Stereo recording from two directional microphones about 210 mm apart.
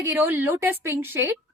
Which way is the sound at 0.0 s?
10° right (ahead or behind).